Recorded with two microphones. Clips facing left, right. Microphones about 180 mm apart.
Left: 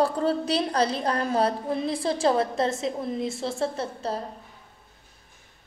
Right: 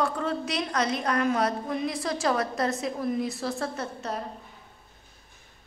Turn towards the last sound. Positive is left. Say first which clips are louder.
# left 3 dB
turn(degrees=30)  # may be behind; listen again after turning